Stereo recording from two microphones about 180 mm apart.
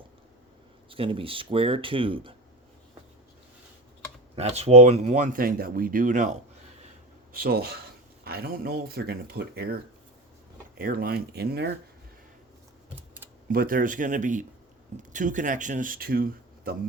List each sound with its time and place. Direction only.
0.9 s speech: 30° right (ahead or behind)
4.4 s speech: 35° right (ahead or behind)
7.3 s speech: 60° right (ahead or behind)
10.8 s speech: 55° right (ahead or behind)
13.5 s speech: 50° right (ahead or behind)